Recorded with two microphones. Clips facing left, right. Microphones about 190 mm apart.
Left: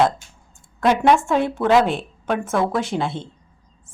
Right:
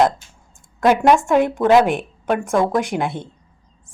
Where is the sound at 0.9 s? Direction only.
10° right (ahead or behind).